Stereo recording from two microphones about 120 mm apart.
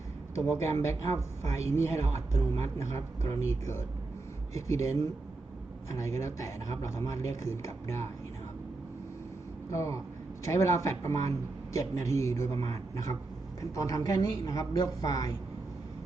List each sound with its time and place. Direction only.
0.3 s speech: 20° left (ahead or behind)
9.6 s speech: 25° left (ahead or behind)